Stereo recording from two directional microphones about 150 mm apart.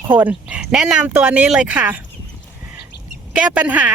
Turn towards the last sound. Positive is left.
turn(degrees=-10)  # may be behind; listen again after turning